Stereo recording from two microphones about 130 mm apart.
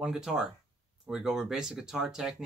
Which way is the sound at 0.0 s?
5° right (ahead or behind).